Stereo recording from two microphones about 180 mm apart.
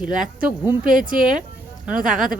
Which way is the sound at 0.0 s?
5° right (ahead or behind).